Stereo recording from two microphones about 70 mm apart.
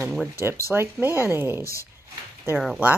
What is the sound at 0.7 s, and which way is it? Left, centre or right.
Speech, right.